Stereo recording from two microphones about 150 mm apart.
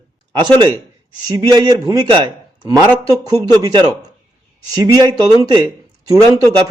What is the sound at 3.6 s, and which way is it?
A man's voice, 25° right (ahead or behind).